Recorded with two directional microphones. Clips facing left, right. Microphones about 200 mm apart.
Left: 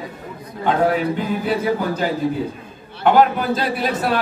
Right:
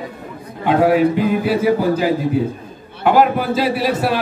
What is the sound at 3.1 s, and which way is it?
A man's voice, 5° right (ahead or behind).